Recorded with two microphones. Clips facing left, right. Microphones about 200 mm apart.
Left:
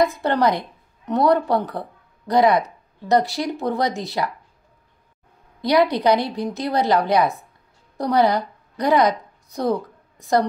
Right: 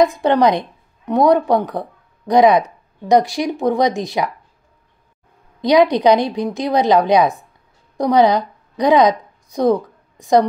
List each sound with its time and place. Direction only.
0.0 s speech: 15° right (ahead or behind)
5.6 s a woman's voice: 15° right (ahead or behind)